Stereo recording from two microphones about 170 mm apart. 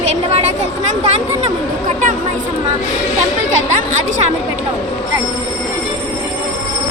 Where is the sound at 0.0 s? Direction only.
40° right (ahead or behind).